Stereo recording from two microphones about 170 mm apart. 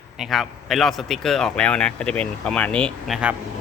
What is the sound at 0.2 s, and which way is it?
Speech, centre (ahead or behind).